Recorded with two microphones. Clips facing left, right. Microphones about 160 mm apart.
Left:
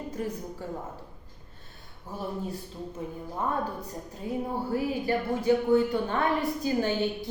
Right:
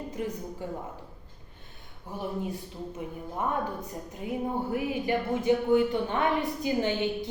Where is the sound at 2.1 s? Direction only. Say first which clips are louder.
Right 1 dB; 15° right (ahead or behind).